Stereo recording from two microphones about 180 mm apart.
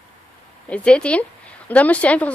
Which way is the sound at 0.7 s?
5° left (ahead or behind).